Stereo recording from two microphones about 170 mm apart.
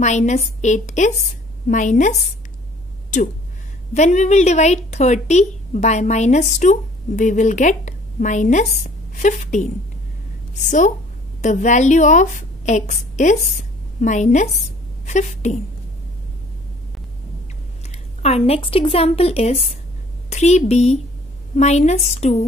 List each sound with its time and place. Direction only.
0.0 s a woman's voice: 45° left (ahead or behind)
3.9 s a woman's voice: 45° left (ahead or behind)
18.2 s a woman's voice: 35° left (ahead or behind)